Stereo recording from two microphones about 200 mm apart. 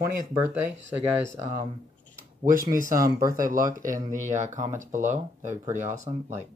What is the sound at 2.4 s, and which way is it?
Speech, 45° right (ahead or behind).